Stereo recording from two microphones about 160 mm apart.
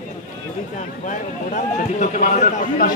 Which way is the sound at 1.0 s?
55° left (ahead or behind).